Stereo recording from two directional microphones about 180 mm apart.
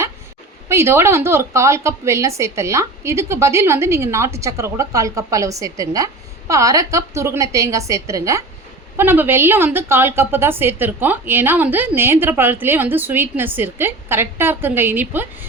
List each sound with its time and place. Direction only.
0.7 s a woman's voice: 15° right (ahead or behind)